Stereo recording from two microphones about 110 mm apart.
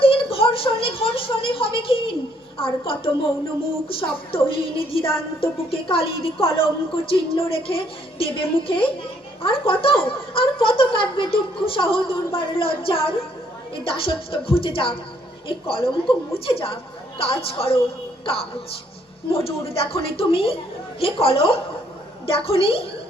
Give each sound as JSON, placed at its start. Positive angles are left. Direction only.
{"t": 0.0, "sound": "a sound", "side_deg": 55}
{"t": 2.6, "sound": "a woman's voice", "side_deg": 55}
{"t": 19.3, "sound": "a woman's voice", "side_deg": 60}